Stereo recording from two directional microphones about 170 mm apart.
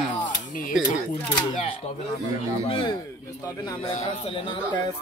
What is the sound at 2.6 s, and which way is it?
Speech, 35° left (ahead or behind).